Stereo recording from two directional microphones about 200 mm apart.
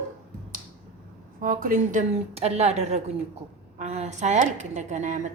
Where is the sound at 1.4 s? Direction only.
45° right (ahead or behind).